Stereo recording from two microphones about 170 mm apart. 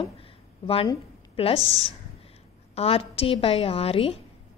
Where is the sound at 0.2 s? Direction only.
35° left (ahead or behind).